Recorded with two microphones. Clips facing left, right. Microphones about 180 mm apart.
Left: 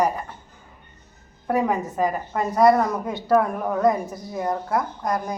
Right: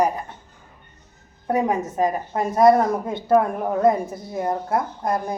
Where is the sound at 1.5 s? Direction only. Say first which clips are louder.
Right 1 dB; 20° right (ahead or behind).